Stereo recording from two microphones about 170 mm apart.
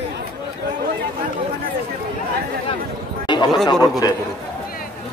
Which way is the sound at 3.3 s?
25° left (ahead or behind).